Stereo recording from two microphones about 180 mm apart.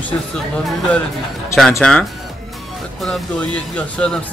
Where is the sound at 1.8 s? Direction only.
5° left (ahead or behind).